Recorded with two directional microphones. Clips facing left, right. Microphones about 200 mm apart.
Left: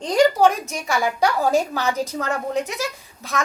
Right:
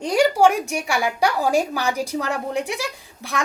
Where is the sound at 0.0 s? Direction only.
10° right (ahead or behind).